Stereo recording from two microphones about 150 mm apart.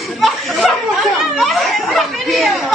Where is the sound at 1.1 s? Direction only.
Centre (ahead or behind).